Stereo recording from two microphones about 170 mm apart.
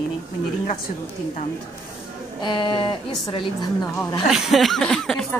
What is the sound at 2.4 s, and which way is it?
A woman's voice, 30° left (ahead or behind).